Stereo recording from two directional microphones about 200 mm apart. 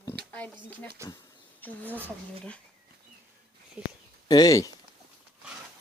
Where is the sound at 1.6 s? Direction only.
10° left (ahead or behind).